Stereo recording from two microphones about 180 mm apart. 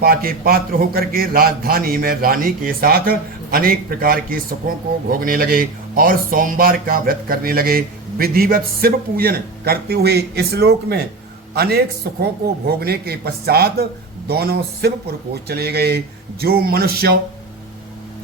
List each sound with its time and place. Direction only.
0.0 s a man's voice: 55° right (ahead or behind)